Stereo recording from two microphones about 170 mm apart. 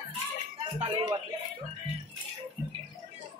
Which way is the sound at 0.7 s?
30° right (ahead or behind).